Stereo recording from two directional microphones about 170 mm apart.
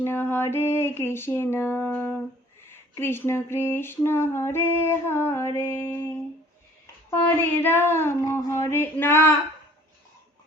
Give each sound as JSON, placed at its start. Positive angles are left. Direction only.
{"t": 0.0, "sound": "female singing", "side_deg": 15}
{"t": 7.1, "sound": "female singing", "side_deg": 10}